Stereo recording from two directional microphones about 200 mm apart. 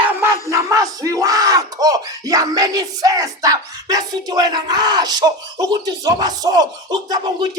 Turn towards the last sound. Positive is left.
turn(degrees=-20)  # may be behind; listen again after turning